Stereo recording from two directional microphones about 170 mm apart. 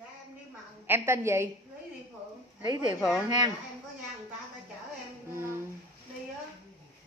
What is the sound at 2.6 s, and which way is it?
Speech, 25° right (ahead or behind).